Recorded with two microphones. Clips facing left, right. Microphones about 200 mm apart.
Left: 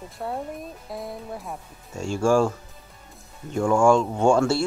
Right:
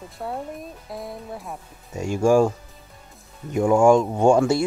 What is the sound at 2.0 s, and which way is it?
Speech, 15° right (ahead or behind).